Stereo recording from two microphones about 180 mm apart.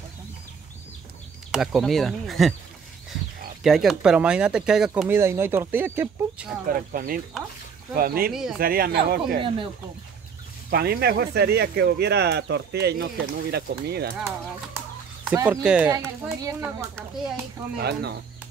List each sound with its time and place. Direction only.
1.5 s speech: centre (ahead or behind)
3.6 s speech: centre (ahead or behind)
6.7 s speech: 50° right (ahead or behind)
8.3 s speech: centre (ahead or behind)
8.5 s speech: 55° right (ahead or behind)
10.7 s speech: 60° right (ahead or behind)
15.2 s speech: 15° right (ahead or behind)
15.9 s speech: 15° right (ahead or behind)
17.7 s speech: 65° right (ahead or behind)